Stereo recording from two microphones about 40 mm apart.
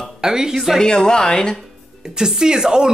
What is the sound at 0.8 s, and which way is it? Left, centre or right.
Speech, centre.